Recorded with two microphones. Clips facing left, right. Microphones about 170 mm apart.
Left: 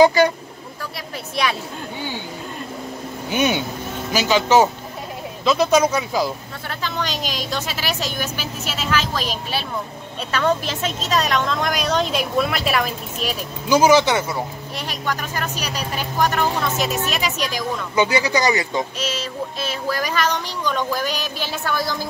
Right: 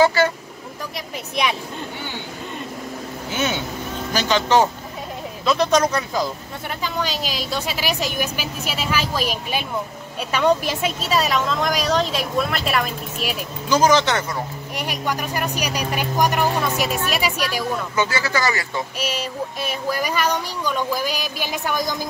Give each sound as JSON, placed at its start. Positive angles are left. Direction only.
{"t": 0.0, "sound": "speech", "side_deg": 15}
{"t": 1.3, "sound": "child singing", "side_deg": -15}
{"t": 3.3, "sound": "a woman's voice", "side_deg": 15}
{"t": 6.7, "sound": "child singing", "side_deg": -10}
{"t": 10.3, "sound": "a woman's voice", "side_deg": -10}
{"t": 14.8, "sound": "child singing", "side_deg": -10}
{"t": 17.9, "sound": "speech", "side_deg": 15}
{"t": 18.9, "sound": "child singing", "side_deg": -10}